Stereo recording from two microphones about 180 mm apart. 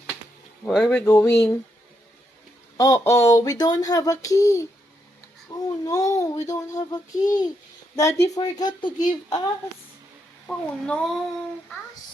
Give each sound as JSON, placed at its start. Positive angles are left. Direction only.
{"t": 0.6, "sound": "speech", "side_deg": 5}
{"t": 2.7, "sound": "speech", "side_deg": 20}
{"t": 10.4, "sound": "a child's voice", "side_deg": 5}